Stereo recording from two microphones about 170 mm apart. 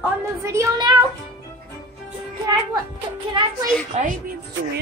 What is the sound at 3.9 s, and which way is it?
Speech, 40° right (ahead or behind).